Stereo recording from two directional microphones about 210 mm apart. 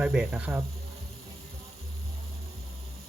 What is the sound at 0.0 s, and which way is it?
Speech, 5° right (ahead or behind).